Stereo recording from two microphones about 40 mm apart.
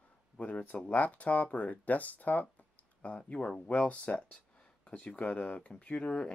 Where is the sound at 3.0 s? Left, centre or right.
Left.